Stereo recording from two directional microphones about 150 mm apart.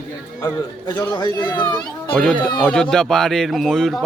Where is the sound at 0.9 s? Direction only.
25° left (ahead or behind).